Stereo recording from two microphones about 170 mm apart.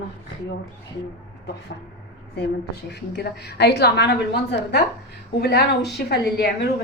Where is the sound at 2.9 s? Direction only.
75° left (ahead or behind).